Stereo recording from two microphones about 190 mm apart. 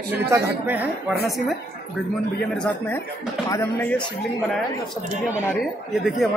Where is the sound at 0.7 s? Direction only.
10° right (ahead or behind); by 4.0 s 10° left (ahead or behind).